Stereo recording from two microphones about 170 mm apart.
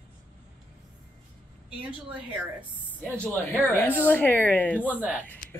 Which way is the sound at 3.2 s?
10° left (ahead or behind).